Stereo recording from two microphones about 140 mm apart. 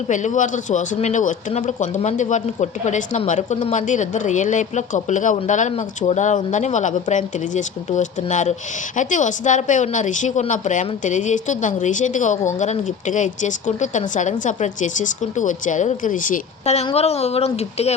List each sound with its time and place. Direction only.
0.1 s speech: 60° left (ahead or behind)
16.8 s speech: 45° left (ahead or behind)